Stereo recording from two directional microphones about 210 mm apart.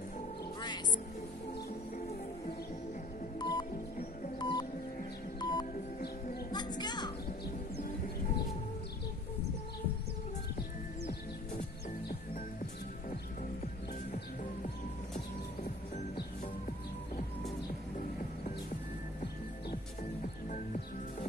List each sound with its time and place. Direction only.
3.3 s music: 20° left (ahead or behind)
20.5 s music: 35° left (ahead or behind)